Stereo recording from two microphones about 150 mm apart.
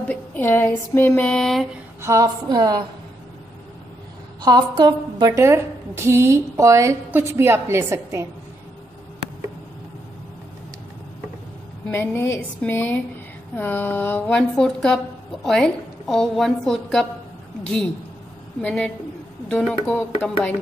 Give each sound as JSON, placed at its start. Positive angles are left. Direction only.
{"t": 0.0, "sound": "a sound", "side_deg": 10}
{"t": 2.0, "sound": "a woman's voice", "side_deg": -20}
{"t": 4.4, "sound": "a woman's voice", "side_deg": -30}
{"t": 5.3, "sound": "a woman's voice", "side_deg": -20}
{"t": 11.9, "sound": "a woman's voice", "side_deg": 15}
{"t": 18.6, "sound": "a woman's voice", "side_deg": 10}